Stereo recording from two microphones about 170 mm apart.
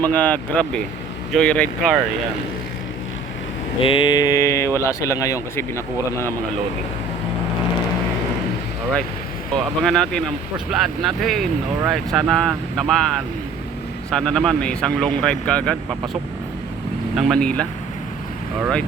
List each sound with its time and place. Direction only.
0.0 s speech: 10° left (ahead or behind)
3.8 s speech: 30° left (ahead or behind); by 6.3 s 15° left (ahead or behind)
9.6 s speech: centre (ahead or behind)
14.1 s speech: 5° left (ahead or behind)
17.2 s speech: centre (ahead or behind)